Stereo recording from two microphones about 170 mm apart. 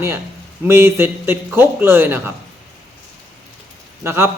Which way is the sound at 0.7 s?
15° right (ahead or behind).